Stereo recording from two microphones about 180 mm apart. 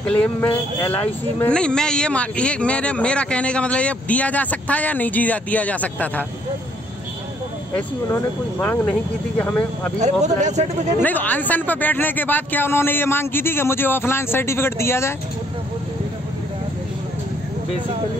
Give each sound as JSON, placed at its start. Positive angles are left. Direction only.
{"t": 0.1, "sound": "speech", "side_deg": 10}
{"t": 7.7, "sound": "speech", "side_deg": 10}
{"t": 9.9, "sound": "speech", "side_deg": -40}
{"t": 11.0, "sound": "speech", "side_deg": 10}